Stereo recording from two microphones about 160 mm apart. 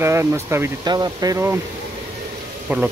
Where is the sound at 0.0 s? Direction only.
15° right (ahead or behind).